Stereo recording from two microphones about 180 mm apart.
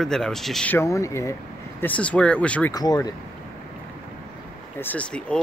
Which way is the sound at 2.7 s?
20° left (ahead or behind).